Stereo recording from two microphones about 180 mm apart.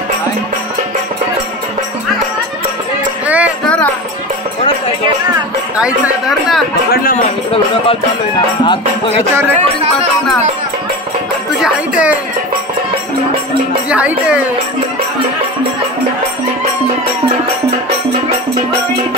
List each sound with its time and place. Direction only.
3.3 s music: 5° right (ahead or behind)
3.6 s music: 5° left (ahead or behind)
5.8 s speech: 5° right (ahead or behind)
8.6 s music: 30° left (ahead or behind)
11.6 s speech: 5° right (ahead or behind)
13.8 s speech: 5° right (ahead or behind)